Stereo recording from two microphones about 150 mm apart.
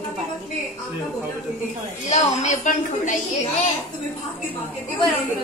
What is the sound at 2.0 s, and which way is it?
A woman's voice, 50° left (ahead or behind).